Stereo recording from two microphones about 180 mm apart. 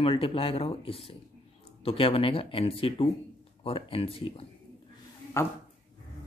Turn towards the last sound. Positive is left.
turn(degrees=15)  # may be behind; listen again after turning